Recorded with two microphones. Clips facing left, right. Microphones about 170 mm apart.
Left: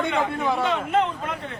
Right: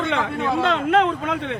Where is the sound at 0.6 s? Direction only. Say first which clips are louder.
Right 6 dB; 90° right.